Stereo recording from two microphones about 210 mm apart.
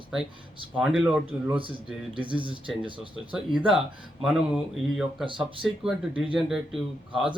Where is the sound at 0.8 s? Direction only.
5° right (ahead or behind).